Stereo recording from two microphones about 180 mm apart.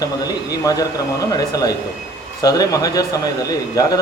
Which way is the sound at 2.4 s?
20° left (ahead or behind).